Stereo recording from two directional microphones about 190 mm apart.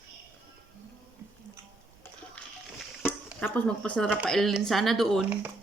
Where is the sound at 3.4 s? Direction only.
5° left (ahead or behind).